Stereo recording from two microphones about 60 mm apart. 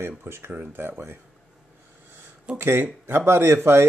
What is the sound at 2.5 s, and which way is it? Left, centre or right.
Speech, right.